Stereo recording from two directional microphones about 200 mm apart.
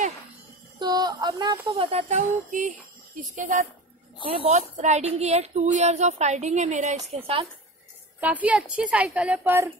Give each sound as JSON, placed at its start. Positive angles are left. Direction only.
{"t": 0.7, "sound": "a sound", "side_deg": -20}
{"t": 1.7, "sound": "speech", "side_deg": -30}
{"t": 8.2, "sound": "a woman's voice", "side_deg": -5}